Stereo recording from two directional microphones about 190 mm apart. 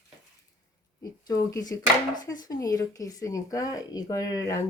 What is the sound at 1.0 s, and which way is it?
Speech, 20° left (ahead or behind).